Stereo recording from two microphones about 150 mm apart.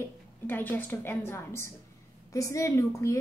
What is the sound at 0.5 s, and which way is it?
A woman's voice, 10° left (ahead or behind).